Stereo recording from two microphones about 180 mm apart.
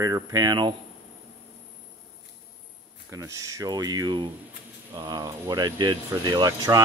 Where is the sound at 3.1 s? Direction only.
20° right (ahead or behind).